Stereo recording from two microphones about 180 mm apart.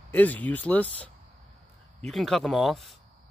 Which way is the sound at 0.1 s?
10° left (ahead or behind).